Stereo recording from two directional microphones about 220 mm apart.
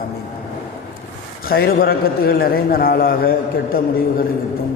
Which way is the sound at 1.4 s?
45° left (ahead or behind).